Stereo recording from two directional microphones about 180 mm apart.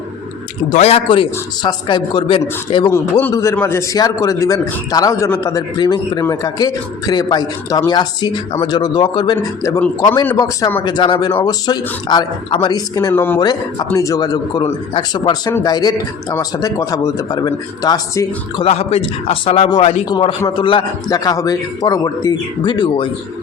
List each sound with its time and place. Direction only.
0.7 s a man's voice: 35° left (ahead or behind)
2.9 s a man's voice: 15° left (ahead or behind)
18.6 s a man's voice: 35° left (ahead or behind)
20.1 s a man's voice: 25° left (ahead or behind)